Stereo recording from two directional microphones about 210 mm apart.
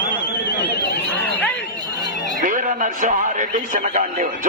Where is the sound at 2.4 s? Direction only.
40° right (ahead or behind).